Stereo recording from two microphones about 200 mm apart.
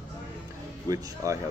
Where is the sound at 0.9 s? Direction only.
15° right (ahead or behind).